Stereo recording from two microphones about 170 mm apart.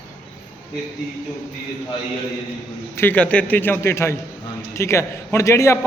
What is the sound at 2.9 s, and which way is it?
A man's voice, 10° left (ahead or behind).